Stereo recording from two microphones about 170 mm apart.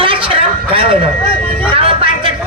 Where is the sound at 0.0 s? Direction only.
30° right (ahead or behind).